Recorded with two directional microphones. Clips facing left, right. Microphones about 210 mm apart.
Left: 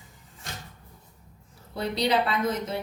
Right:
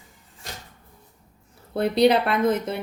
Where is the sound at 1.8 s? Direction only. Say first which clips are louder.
Right 7 dB; 55° right (ahead or behind).